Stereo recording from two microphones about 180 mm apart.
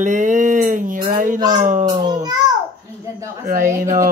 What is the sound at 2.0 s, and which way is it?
Speech, 20° right (ahead or behind).